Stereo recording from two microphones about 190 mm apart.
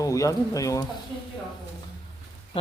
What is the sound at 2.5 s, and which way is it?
Speech, 25° left (ahead or behind).